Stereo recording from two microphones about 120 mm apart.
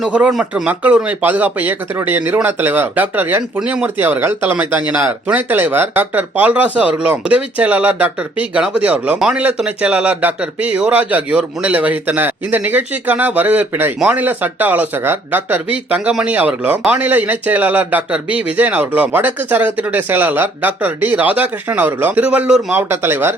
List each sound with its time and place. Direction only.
0.1 s speech: 10° right (ahead or behind)